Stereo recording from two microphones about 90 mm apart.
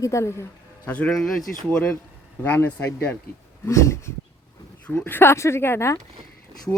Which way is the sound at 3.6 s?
35° left (ahead or behind).